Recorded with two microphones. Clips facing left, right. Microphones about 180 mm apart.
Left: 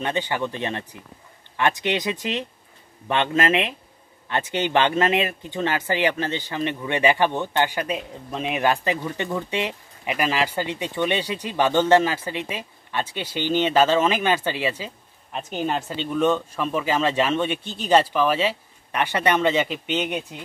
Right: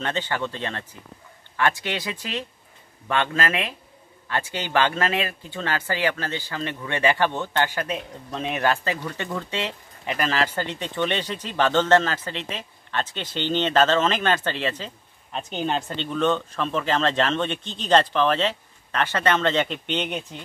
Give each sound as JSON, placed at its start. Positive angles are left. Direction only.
{"t": 0.0, "sound": "speech", "side_deg": 15}